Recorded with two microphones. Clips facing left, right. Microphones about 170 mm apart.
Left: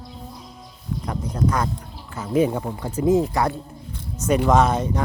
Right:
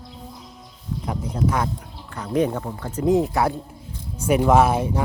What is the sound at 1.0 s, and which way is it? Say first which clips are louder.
Speech: even; 10° right (ahead or behind).